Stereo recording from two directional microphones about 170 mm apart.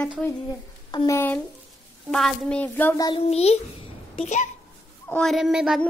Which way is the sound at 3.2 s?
35° left (ahead or behind).